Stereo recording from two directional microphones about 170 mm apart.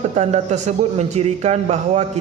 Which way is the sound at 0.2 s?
45° right (ahead or behind).